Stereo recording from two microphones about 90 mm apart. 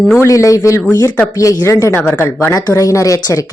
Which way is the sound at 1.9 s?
10° left (ahead or behind).